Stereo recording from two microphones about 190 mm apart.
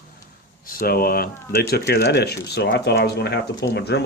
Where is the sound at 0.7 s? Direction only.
50° left (ahead or behind).